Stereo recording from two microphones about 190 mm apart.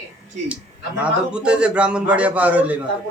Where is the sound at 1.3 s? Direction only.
5° right (ahead or behind).